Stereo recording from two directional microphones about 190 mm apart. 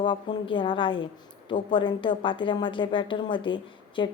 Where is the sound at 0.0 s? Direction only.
25° left (ahead or behind).